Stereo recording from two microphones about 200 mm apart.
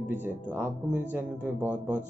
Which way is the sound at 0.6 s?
10° right (ahead or behind).